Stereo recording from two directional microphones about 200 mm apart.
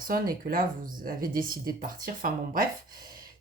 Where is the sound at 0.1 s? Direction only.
45° right (ahead or behind).